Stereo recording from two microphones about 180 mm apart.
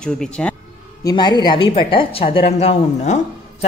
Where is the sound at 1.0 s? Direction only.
25° left (ahead or behind).